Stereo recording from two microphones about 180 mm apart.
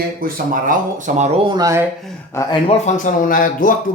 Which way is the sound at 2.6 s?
35° left (ahead or behind).